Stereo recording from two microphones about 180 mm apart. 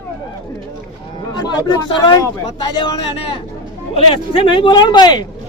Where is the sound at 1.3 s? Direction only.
20° left (ahead or behind).